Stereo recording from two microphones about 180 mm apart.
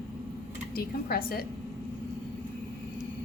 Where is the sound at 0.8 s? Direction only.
55° left (ahead or behind).